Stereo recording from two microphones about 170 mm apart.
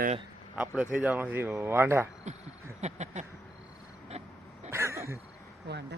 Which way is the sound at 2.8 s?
40° right (ahead or behind).